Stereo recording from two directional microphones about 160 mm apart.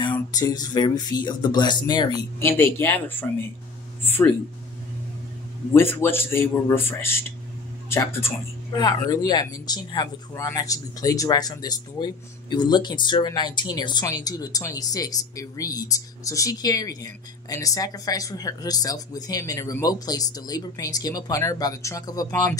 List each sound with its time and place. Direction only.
0.3 s speech: 25° left (ahead or behind)
2.4 s speech: 15° left (ahead or behind)
4.0 s a sound: 10° left (ahead or behind)
5.8 s speech: 15° left (ahead or behind)